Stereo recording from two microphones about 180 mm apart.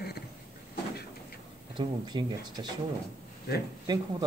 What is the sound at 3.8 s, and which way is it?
Speech, 25° right (ahead or behind).